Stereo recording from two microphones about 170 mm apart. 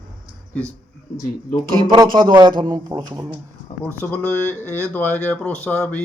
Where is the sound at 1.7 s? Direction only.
25° right (ahead or behind).